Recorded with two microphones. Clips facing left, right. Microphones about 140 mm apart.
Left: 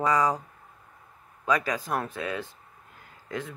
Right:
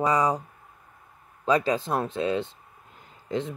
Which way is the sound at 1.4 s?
30° right (ahead or behind).